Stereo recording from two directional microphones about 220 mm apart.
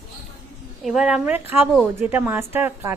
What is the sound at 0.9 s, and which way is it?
A woman's voice, 5° right (ahead or behind).